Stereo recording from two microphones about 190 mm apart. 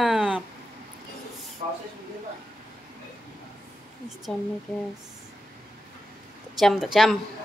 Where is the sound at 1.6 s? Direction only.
35° right (ahead or behind).